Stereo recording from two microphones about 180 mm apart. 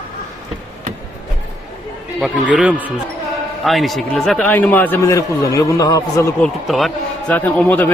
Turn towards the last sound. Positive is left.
turn(degrees=10)  # may be behind; listen again after turning